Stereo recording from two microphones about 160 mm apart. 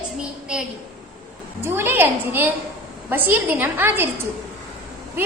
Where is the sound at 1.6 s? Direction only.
15° right (ahead or behind).